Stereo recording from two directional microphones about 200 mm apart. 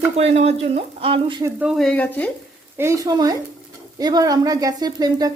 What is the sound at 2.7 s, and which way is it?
Speech, 15° right (ahead or behind).